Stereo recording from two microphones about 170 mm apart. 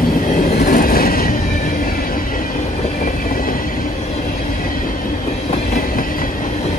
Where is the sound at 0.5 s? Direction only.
55° left (ahead or behind).